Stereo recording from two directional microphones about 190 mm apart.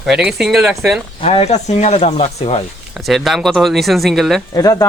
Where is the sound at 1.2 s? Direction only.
30° left (ahead or behind).